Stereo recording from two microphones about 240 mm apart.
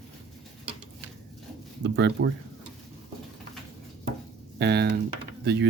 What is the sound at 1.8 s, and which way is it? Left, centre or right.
Speech, right.